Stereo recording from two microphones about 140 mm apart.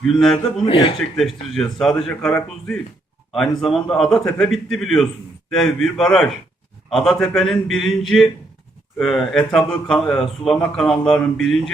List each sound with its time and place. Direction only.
0.2 s speech: 5° left (ahead or behind)
0.6 s speech: 40° left (ahead or behind)
0.9 s speech: centre (ahead or behind)